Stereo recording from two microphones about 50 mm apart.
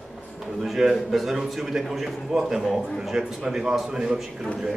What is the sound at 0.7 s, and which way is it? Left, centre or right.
A man's voice, centre.